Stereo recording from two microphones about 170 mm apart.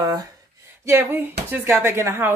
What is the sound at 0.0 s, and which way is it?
A woman's voice, 20° right (ahead or behind).